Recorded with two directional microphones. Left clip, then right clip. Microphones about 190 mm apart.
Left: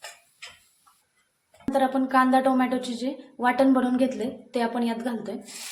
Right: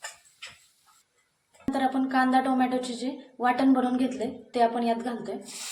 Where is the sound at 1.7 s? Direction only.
25° left (ahead or behind).